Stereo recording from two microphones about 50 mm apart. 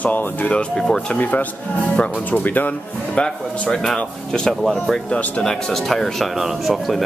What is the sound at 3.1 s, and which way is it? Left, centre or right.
Speech, left.